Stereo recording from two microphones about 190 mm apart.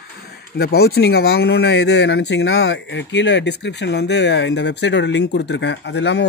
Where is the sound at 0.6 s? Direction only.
55° left (ahead or behind).